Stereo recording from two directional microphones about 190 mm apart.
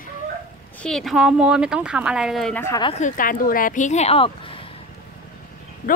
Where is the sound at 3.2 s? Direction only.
45° left (ahead or behind); by 4.6 s 30° left (ahead or behind).